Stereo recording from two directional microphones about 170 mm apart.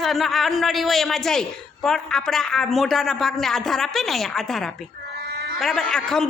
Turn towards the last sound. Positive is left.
turn(degrees=5)  # may be behind; listen again after turning